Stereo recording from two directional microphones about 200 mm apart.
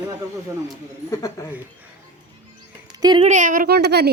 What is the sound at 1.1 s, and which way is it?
Speech, 15° left (ahead or behind).